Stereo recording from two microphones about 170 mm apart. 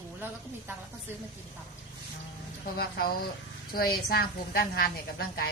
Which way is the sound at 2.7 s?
65° left (ahead or behind).